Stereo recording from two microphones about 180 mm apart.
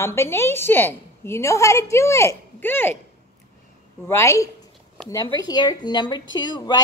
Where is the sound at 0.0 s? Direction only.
15° left (ahead or behind).